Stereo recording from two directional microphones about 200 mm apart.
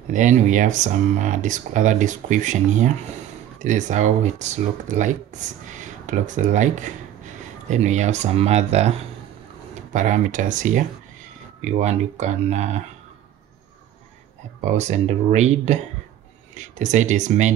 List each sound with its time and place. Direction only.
0.1 s speech: 40° right (ahead or behind)
14.6 s speech: 35° right (ahead or behind)